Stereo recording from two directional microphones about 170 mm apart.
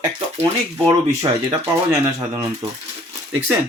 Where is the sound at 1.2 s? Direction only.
20° right (ahead or behind).